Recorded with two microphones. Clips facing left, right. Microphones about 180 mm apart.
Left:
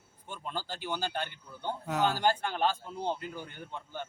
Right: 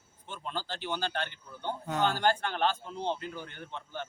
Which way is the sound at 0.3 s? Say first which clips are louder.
Right 1 dB; 10° left (ahead or behind).